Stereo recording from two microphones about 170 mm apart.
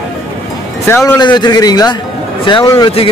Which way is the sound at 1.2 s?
25° left (ahead or behind).